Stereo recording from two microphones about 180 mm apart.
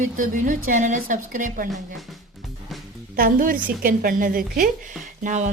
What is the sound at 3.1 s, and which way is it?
A woman's voice, 50° right (ahead or behind).